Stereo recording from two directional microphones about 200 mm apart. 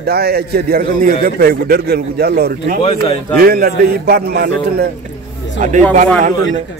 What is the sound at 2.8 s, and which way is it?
Speech, 25° left (ahead or behind).